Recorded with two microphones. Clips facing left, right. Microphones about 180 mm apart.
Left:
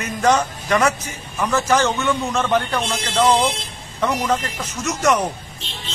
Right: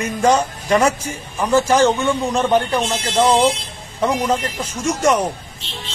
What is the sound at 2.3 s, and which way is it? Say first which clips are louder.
A man's voice: right 3 dB; 30° right (ahead or behind).